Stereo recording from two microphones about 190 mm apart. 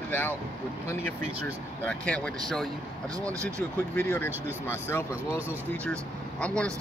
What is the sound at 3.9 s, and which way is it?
Speech, 10° left (ahead or behind).